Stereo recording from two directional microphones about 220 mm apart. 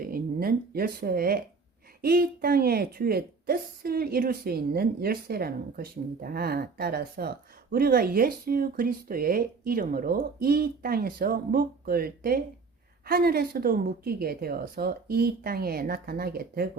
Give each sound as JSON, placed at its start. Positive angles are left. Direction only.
{"t": 0.0, "sound": "speech", "side_deg": -40}